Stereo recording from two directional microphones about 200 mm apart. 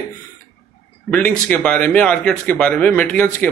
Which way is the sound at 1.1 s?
5° left (ahead or behind).